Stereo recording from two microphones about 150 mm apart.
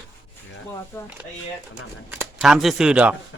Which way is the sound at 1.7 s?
10° right (ahead or behind).